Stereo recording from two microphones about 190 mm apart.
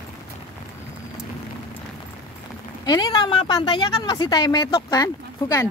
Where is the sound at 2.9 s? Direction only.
20° left (ahead or behind).